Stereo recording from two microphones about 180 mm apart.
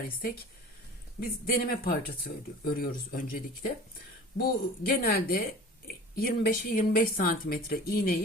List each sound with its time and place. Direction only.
1.2 s speech: 55° left (ahead or behind)